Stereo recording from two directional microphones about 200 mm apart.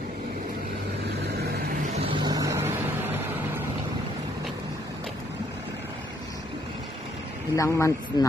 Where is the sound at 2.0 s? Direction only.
25° right (ahead or behind).